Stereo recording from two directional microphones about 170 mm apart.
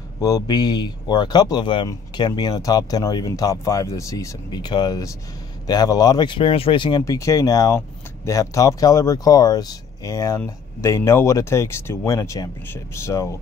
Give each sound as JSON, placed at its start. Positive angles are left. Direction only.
{"t": 0.2, "sound": "speech", "side_deg": 20}